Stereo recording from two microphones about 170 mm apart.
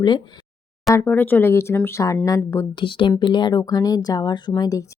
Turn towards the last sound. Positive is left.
turn(degrees=20)  # may be behind; listen again after turning